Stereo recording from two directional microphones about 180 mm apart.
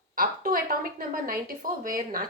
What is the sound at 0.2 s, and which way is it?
A woman's voice, 55° right (ahead or behind).